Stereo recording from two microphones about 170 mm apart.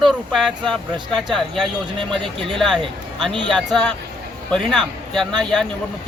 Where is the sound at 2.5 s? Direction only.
Centre (ahead or behind).